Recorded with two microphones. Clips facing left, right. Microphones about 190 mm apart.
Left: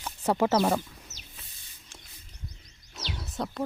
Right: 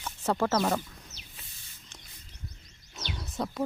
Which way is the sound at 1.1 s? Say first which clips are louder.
Left 1 dB; 85° left.